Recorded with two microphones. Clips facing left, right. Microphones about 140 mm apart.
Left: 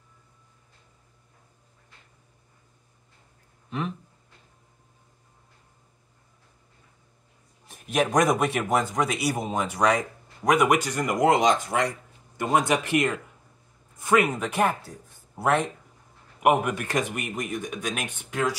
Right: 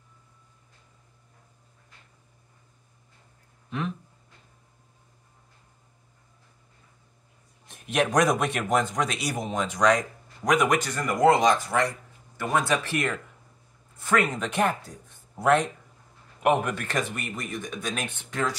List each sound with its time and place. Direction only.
7.6 s a man's voice: centre (ahead or behind)